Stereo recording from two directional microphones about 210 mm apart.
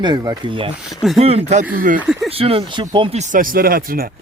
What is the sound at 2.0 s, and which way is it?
Speech, 5° right (ahead or behind).